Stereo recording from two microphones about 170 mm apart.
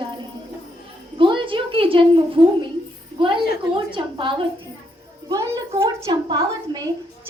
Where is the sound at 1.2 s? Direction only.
30° right (ahead or behind).